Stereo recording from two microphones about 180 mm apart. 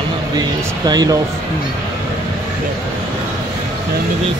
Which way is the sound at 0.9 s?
20° right (ahead or behind).